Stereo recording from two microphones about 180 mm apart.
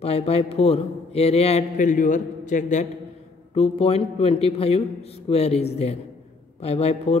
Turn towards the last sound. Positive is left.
turn(degrees=35)  # may be behind; listen again after turning